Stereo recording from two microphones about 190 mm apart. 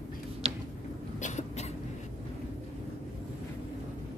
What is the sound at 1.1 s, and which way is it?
Cough, 40° left (ahead or behind).